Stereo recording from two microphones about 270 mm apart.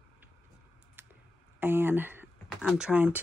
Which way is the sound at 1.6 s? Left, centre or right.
Centre.